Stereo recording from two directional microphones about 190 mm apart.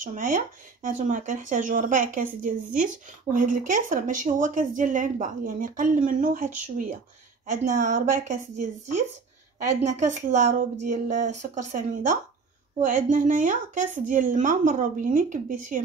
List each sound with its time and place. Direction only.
0.0 s a woman's voice: 40° right (ahead or behind)